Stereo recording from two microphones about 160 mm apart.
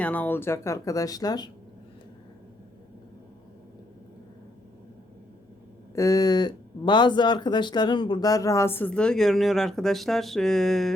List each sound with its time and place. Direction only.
0.0 s speech: 10° left (ahead or behind)
5.9 s speech: 20° left (ahead or behind); by 10.9 s centre (ahead or behind)